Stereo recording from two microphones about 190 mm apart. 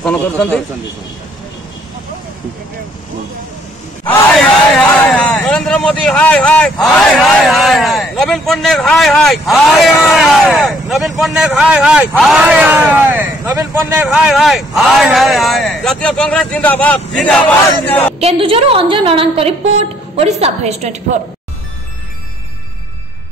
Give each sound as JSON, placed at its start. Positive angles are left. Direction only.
{"t": 0.0, "sound": "a man's voice", "side_deg": 5}
{"t": 4.7, "sound": "a man's voice", "side_deg": 5}
{"t": 18.2, "sound": "a woman's voice", "side_deg": -30}